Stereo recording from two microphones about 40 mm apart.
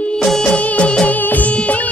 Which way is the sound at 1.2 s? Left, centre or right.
Left.